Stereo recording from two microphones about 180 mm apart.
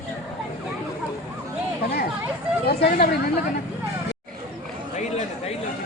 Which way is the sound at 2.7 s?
60° left (ahead or behind).